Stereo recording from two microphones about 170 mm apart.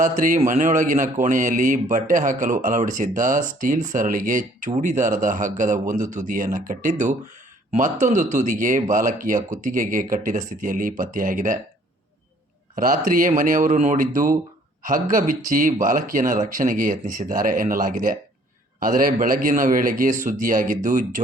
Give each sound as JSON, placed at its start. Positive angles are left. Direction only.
{"t": 0.0, "sound": "speech", "side_deg": -50}
{"t": 12.7, "sound": "speech", "side_deg": -55}